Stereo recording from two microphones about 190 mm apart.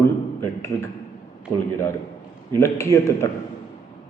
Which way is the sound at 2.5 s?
15° left (ahead or behind).